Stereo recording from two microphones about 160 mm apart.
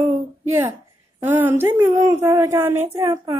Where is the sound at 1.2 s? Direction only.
15° right (ahead or behind).